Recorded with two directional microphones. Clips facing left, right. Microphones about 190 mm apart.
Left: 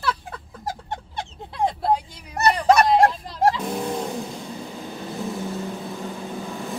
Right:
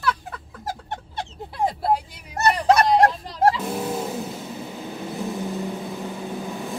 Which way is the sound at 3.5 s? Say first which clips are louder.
Even; centre (ahead or behind).